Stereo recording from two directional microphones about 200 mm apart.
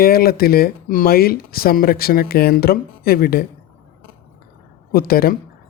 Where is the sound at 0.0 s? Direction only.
50° left (ahead or behind).